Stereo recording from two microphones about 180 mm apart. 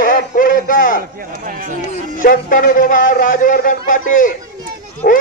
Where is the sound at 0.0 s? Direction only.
50° left (ahead or behind).